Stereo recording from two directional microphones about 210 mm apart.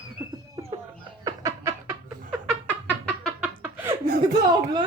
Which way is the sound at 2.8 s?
Centre (ahead or behind).